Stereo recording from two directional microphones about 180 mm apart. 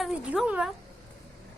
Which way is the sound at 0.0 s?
5° right (ahead or behind).